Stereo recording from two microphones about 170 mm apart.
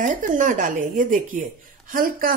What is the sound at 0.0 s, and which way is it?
Speech, 50° right (ahead or behind).